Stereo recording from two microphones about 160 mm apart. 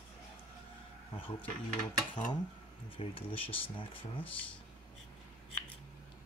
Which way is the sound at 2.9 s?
35° left (ahead or behind).